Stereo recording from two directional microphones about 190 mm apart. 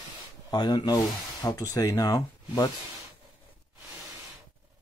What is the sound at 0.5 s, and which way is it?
Speech, 20° left (ahead or behind).